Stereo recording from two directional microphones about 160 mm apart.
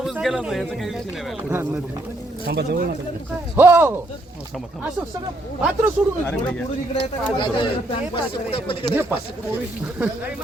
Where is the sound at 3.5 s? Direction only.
10° right (ahead or behind).